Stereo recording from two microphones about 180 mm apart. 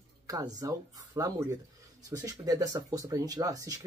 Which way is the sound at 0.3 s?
20° right (ahead or behind).